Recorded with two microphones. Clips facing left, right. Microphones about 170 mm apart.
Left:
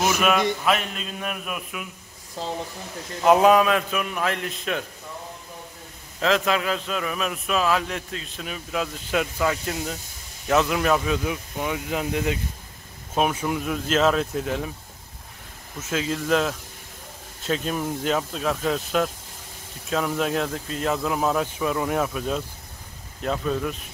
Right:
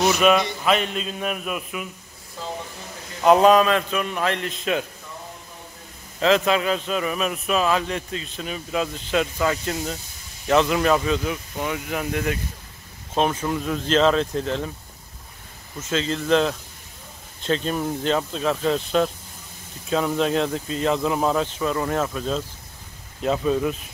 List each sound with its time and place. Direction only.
0.0 s a man's voice: 5° left (ahead or behind)
2.4 s speech: 35° left (ahead or behind)
3.3 s a man's voice: 10° left (ahead or behind)
6.1 s a man's voice: centre (ahead or behind)
15.8 s a man's voice: 10° left (ahead or behind)
23.2 s a man's voice: 5° right (ahead or behind)